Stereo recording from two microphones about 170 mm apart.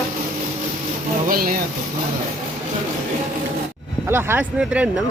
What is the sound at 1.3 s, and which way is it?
Speech, 60° right (ahead or behind).